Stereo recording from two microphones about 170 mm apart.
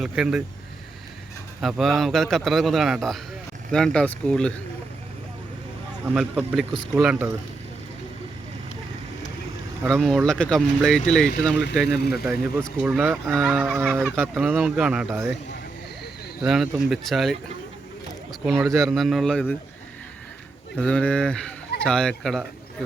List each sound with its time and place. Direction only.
0.0 s a man's voice: 5° right (ahead or behind)
1.6 s a man's voice: centre (ahead or behind)
6.1 s a man's voice: 5° right (ahead or behind)
9.9 s a man's voice: centre (ahead or behind)
11.9 s speech: 70° left (ahead or behind)
12.2 s a man's voice: 10° right (ahead or behind)
16.4 s a man's voice: 5° right (ahead or behind)
18.6 s a man's voice: centre (ahead or behind)
20.7 s a man's voice: 5° left (ahead or behind)